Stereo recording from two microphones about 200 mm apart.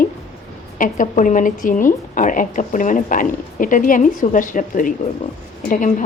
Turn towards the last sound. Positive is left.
turn(degrees=40)  # may be behind; listen again after turning